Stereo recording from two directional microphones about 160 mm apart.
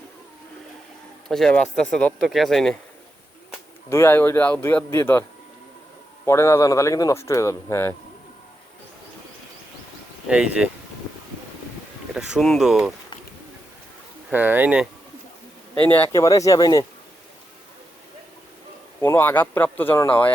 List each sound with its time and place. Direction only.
1.3 s speech: 5° left (ahead or behind)
3.8 s speech: 15° left (ahead or behind)
6.2 s speech: 15° left (ahead or behind)
10.2 s speech: 5° right (ahead or behind)
12.1 s speech: 5° right (ahead or behind)
14.3 s speech: 10° right (ahead or behind)
16.0 s speech: 20° left (ahead or behind)
19.0 s speech: 10° left (ahead or behind)